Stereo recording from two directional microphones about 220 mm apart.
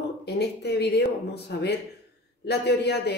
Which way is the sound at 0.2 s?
50° left (ahead or behind).